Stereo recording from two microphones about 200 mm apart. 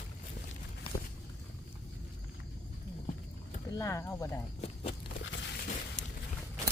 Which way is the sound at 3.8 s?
15° left (ahead or behind).